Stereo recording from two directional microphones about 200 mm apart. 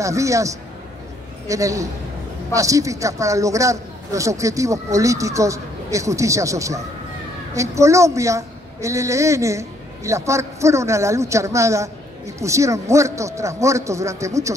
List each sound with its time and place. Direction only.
0.0 s a woman's voice: 15° right (ahead or behind)